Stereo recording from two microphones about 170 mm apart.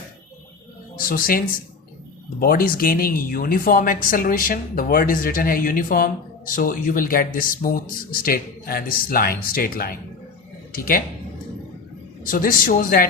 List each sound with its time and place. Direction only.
0.9 s speech: 60° left (ahead or behind)
2.4 s speech: 55° left (ahead or behind)
12.2 s speech: 55° left (ahead or behind)